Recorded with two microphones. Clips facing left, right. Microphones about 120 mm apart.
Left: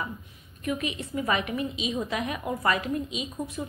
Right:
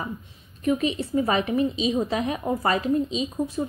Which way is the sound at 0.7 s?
30° right (ahead or behind).